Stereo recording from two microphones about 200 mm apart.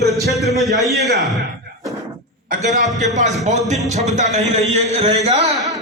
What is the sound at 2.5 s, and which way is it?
Speech, 35° right (ahead or behind).